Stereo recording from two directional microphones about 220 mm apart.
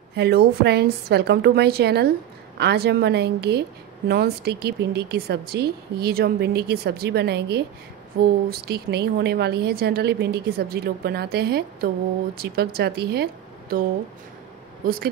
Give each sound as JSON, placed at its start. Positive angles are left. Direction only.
{"t": 0.1, "sound": "a woman's voice", "side_deg": -45}